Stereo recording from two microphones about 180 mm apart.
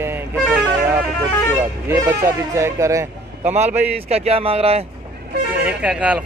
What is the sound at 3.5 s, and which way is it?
Speech, 40° right (ahead or behind).